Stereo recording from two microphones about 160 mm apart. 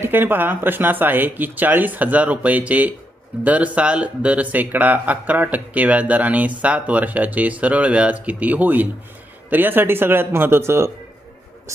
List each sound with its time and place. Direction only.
0.0 s speech: 15° right (ahead or behind)